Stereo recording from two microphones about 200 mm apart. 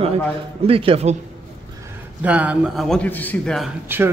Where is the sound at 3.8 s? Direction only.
10° right (ahead or behind).